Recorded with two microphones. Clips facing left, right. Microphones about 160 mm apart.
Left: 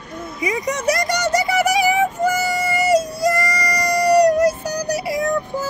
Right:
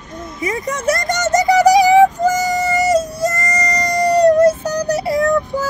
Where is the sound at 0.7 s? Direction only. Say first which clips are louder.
Right 4 dB; 50° right (ahead or behind).